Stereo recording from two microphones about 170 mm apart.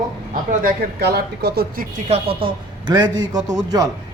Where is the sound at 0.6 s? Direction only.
60° right (ahead or behind).